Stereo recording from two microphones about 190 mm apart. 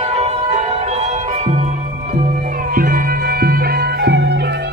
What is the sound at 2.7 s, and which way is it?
Music, 50° right (ahead or behind).